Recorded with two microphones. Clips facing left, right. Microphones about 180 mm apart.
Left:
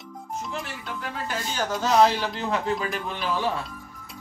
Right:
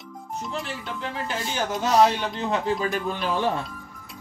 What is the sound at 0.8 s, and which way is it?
Speech, 20° right (ahead or behind).